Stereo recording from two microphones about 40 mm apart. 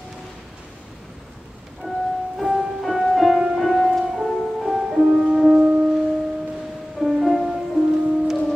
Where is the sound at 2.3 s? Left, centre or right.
Centre.